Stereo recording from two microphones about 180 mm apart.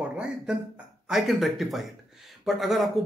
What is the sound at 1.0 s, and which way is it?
A man's voice, centre (ahead or behind).